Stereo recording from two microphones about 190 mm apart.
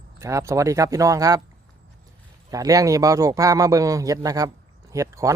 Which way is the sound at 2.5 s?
20° right (ahead or behind).